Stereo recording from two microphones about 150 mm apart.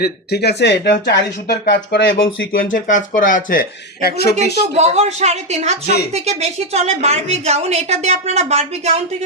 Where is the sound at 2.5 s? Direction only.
65° left (ahead or behind); by 4.4 s 90° left.